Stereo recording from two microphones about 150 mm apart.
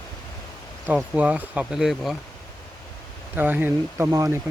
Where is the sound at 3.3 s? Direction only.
10° right (ahead or behind).